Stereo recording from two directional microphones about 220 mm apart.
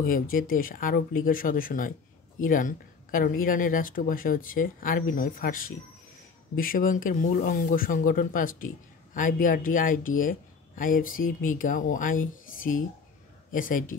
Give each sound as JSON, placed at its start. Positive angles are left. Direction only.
{"t": 0.0, "sound": "speech", "side_deg": 40}
{"t": 12.5, "sound": "whispering", "side_deg": 40}
{"t": 13.5, "sound": "speech", "side_deg": 40}